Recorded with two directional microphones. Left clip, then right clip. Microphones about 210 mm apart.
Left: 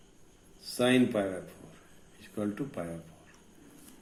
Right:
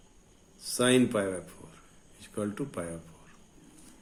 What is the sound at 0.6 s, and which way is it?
Speech, 45° right (ahead or behind).